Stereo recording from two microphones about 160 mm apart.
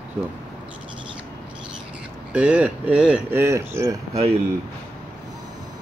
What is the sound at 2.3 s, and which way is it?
Speech, 10° right (ahead or behind).